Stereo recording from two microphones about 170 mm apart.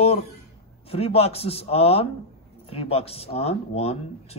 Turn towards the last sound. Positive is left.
turn(degrees=35)  # may be behind; listen again after turning